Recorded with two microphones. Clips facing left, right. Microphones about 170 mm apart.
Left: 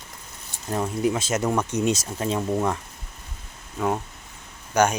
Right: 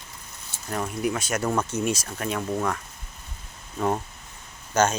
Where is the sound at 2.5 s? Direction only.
15° left (ahead or behind).